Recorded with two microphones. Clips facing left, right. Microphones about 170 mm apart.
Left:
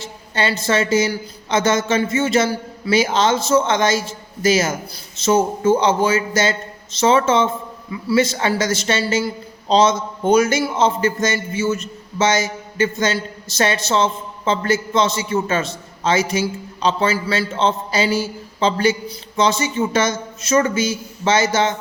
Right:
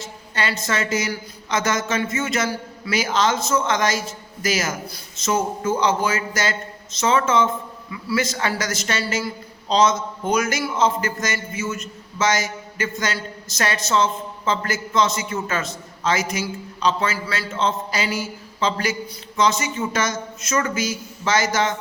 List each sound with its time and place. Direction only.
0.0 s a woman's voice: 30° left (ahead or behind)